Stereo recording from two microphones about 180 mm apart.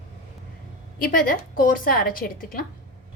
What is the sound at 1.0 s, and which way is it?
A woman's voice, 50° left (ahead or behind).